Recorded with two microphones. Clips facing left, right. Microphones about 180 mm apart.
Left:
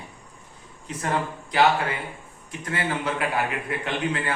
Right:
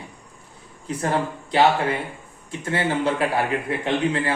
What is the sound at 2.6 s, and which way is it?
Speech, 30° right (ahead or behind).